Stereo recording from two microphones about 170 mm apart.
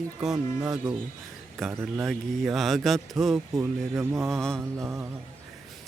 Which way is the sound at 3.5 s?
15° right (ahead or behind).